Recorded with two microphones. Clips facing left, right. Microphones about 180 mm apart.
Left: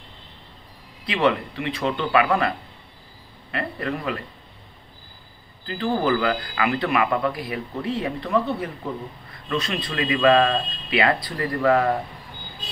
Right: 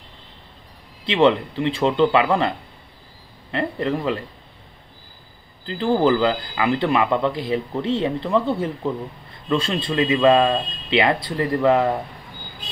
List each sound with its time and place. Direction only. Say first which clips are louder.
1.0 s speech: right 5 dB; 25° right (ahead or behind)
3.5 s speech: right 5 dB; 25° right (ahead or behind)
5.7 s speech: right 4 dB; 25° right (ahead or behind)